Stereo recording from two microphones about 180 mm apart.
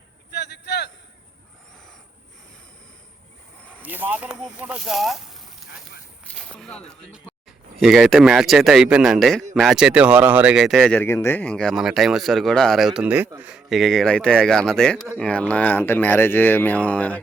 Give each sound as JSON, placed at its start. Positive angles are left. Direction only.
{"t": 0.3, "sound": "a sound", "side_deg": 70}
{"t": 3.8, "sound": "speech", "side_deg": -10}
{"t": 11.0, "sound": "speech", "side_deg": 15}